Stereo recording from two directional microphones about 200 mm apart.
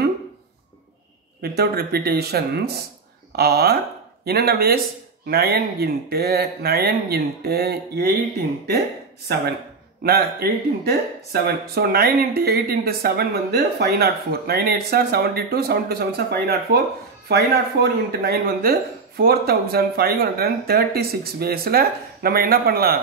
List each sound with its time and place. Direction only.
1.4 s speech: 50° right (ahead or behind)
10.0 s speech: 50° right (ahead or behind)